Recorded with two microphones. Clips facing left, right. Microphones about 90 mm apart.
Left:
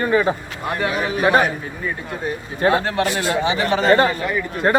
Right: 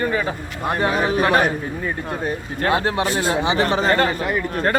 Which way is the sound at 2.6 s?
15° left (ahead or behind).